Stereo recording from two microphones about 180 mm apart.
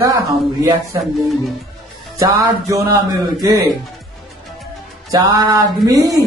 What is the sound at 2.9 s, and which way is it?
Music, 20° right (ahead or behind).